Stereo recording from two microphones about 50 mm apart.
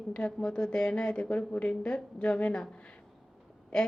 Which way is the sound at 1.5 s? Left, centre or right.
Left.